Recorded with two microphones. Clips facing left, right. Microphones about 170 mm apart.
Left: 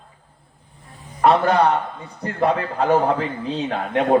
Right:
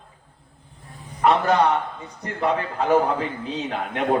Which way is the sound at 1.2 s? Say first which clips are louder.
Left 2 dB; 35° left (ahead or behind).